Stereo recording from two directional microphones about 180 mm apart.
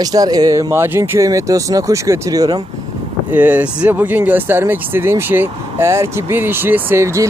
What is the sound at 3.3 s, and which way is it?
Speech, 10° right (ahead or behind).